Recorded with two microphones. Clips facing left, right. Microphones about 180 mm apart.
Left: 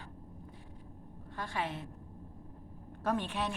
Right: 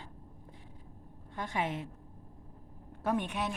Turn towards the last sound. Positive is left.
turn(degrees=-10)  # may be behind; listen again after turning